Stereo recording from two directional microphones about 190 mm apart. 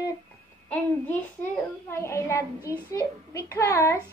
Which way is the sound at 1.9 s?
15° left (ahead or behind).